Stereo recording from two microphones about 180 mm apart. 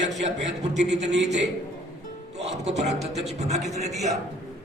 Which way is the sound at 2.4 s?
35° right (ahead or behind).